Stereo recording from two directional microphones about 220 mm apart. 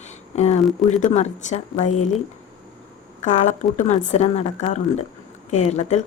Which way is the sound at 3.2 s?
35° left (ahead or behind).